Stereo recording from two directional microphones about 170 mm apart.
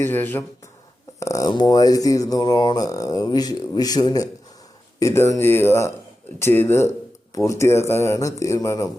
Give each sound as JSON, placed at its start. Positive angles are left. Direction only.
{"t": 0.0, "sound": "speech", "side_deg": 10}